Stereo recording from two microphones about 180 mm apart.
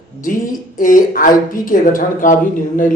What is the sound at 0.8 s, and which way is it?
Speech, 50° left (ahead or behind).